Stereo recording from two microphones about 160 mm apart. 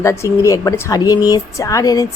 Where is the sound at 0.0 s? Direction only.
20° left (ahead or behind).